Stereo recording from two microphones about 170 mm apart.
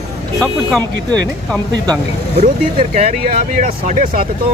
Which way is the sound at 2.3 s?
40° right (ahead or behind).